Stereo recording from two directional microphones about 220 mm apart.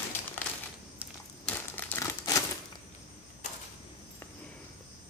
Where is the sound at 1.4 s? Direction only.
10° left (ahead or behind).